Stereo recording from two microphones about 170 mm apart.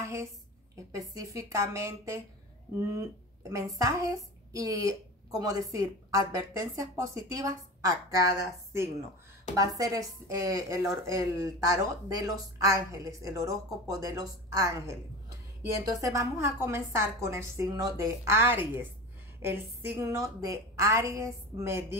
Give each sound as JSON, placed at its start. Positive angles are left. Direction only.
{"t": 0.0, "sound": "a sound", "side_deg": -15}
{"t": 0.9, "sound": "a woman's voice", "side_deg": -20}
{"t": 9.6, "sound": "a woman's voice", "side_deg": -20}